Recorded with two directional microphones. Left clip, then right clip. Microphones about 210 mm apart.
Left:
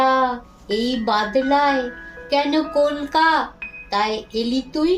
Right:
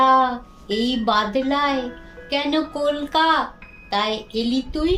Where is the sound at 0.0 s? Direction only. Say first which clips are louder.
Right 2 dB; 10° right (ahead or behind).